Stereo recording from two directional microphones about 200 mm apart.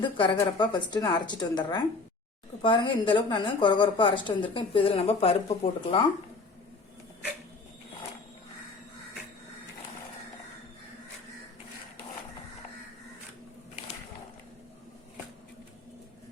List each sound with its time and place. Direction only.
0.0 s a woman's voice: 25° left (ahead or behind)